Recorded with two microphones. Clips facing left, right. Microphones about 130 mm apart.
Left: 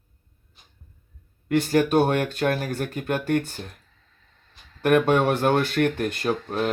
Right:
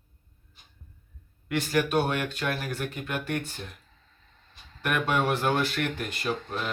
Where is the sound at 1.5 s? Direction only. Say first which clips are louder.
Left 6 dB; 40° left (ahead or behind).